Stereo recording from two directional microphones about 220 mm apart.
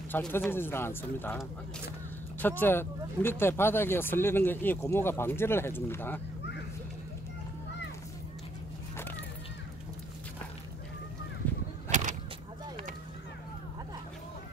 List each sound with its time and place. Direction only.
0.1 s speech: 5° left (ahead or behind)
2.4 s speech: 10° left (ahead or behind)
11.9 s a sound: 35° right (ahead or behind)